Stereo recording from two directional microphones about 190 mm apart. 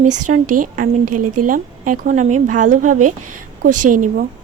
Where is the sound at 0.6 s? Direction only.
45° right (ahead or behind).